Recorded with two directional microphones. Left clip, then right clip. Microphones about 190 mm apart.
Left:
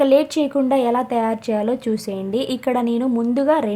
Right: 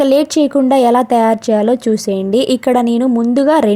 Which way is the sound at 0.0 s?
35° right (ahead or behind).